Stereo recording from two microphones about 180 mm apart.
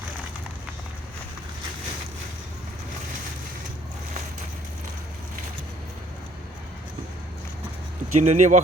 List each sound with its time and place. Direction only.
8.1 s speech: 40° right (ahead or behind)